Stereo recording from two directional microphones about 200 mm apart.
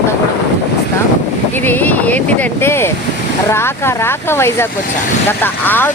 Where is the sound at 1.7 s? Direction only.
10° left (ahead or behind).